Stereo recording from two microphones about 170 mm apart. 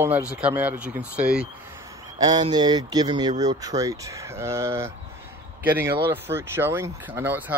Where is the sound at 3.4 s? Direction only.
20° right (ahead or behind).